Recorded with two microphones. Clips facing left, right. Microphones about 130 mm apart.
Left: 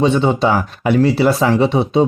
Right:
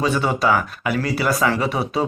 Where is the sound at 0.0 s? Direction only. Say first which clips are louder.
Left 5 dB; 25° left (ahead or behind).